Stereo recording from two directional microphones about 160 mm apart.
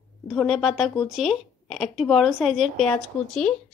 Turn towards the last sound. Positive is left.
turn(degrees=5)  # may be behind; listen again after turning